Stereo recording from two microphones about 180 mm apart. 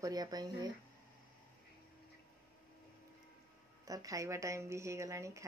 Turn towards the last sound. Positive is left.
turn(degrees=-15)  # may be behind; listen again after turning